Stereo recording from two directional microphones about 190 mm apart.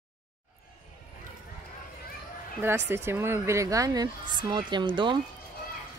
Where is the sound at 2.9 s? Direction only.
10° right (ahead or behind).